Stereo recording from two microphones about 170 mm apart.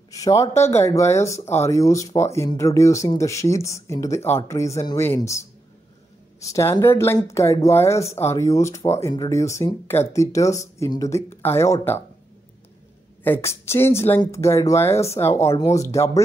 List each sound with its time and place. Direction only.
0.1 s speech: 20° left (ahead or behind)
13.2 s speech: 15° left (ahead or behind)